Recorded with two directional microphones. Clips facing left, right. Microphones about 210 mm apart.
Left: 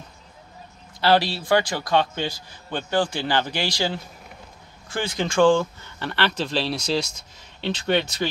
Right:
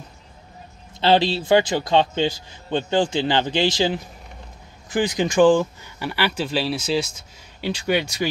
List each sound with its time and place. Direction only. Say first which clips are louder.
1.0 s a man's voice: right 2 dB; 20° right (ahead or behind)